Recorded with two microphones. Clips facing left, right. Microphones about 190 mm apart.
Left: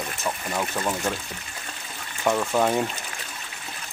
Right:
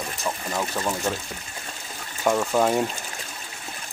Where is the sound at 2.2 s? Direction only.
10° right (ahead or behind).